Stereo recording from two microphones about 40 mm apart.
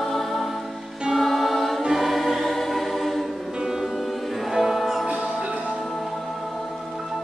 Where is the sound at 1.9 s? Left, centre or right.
Centre.